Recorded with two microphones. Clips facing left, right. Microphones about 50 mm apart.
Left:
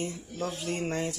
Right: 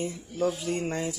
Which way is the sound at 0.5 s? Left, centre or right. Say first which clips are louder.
Right 1 dB; centre.